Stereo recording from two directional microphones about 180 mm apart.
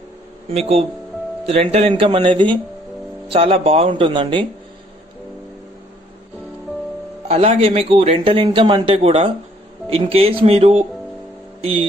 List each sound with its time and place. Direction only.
1.5 s a man's voice: 35° right (ahead or behind)
7.2 s a man's voice: 35° right (ahead or behind)